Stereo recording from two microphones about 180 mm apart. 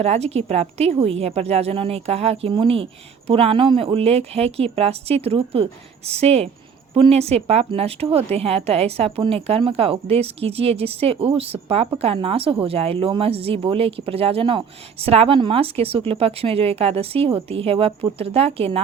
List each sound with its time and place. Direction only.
0.0 s a woman's voice: 35° right (ahead or behind)